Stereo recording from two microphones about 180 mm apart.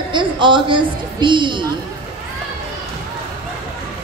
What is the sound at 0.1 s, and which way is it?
A woman's voice, 25° right (ahead or behind).